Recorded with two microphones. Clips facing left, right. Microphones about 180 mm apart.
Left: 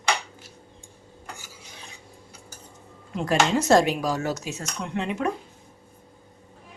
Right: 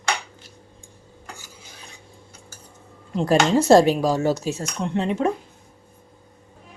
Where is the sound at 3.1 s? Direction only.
30° right (ahead or behind).